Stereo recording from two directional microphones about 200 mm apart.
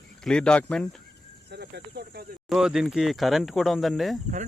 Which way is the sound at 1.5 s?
55° right (ahead or behind).